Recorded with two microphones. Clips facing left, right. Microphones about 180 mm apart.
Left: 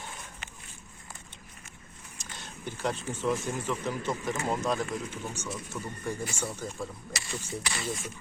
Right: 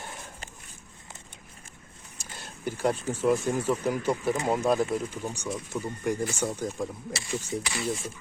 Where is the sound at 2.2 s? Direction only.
10° right (ahead or behind).